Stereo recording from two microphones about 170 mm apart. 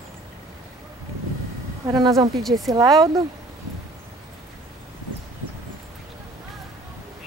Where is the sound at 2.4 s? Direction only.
Centre (ahead or behind).